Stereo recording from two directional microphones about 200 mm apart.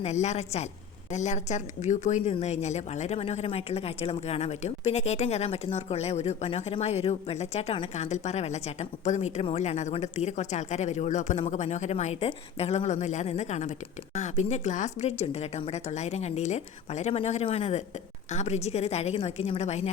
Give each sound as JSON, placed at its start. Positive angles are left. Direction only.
{"t": 0.0, "sound": "speech", "side_deg": 35}